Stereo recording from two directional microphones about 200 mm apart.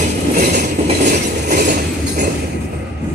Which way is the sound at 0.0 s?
35° right (ahead or behind).